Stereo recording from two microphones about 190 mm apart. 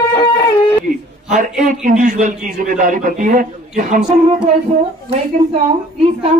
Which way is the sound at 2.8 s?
45° right (ahead or behind).